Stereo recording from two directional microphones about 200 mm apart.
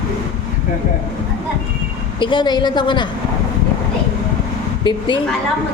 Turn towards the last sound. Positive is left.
turn(degrees=25)  # may be behind; listen again after turning